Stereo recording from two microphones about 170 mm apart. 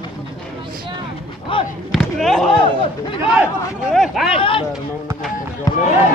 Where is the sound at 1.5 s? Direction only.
30° left (ahead or behind).